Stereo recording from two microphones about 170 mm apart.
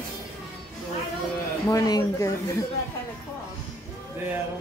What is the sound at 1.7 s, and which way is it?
Speech, 20° left (ahead or behind).